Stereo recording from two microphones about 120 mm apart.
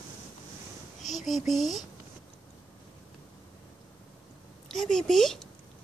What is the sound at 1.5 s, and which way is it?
Speech, centre (ahead or behind).